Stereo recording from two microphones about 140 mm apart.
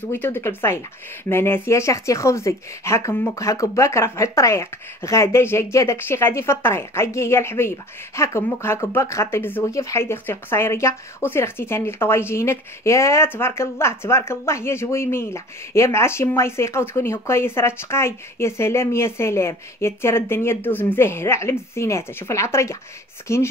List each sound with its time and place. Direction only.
0.1 s speech: 15° left (ahead or behind)